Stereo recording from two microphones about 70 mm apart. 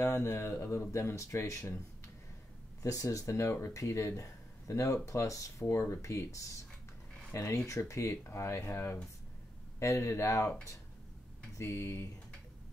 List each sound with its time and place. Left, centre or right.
0.0 s speech: left
2.8 s speech: left
9.8 s speech: left
11.5 s speech: left